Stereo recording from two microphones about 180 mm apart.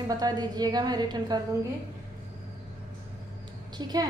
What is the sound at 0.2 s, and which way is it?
A woman's voice, 20° right (ahead or behind).